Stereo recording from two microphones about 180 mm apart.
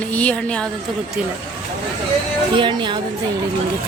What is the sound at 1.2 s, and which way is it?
Speech, 5° right (ahead or behind).